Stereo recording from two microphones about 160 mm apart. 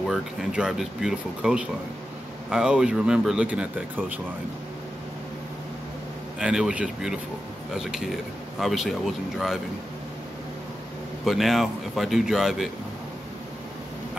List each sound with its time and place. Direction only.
0.0 s speech: centre (ahead or behind)
6.4 s speech: 5° right (ahead or behind)
11.2 s speech: centre (ahead or behind)